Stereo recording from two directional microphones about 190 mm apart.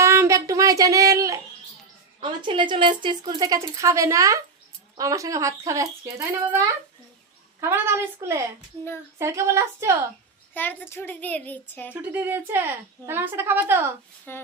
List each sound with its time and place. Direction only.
0.0 s a sound: 15° right (ahead or behind)
2.2 s a woman's voice: 25° right (ahead or behind)
7.6 s a woman's voice: 15° right (ahead or behind)
10.5 s speech: 10° left (ahead or behind)
12.1 s a woman's voice: 10° right (ahead or behind)
14.3 s speech: 10° left (ahead or behind)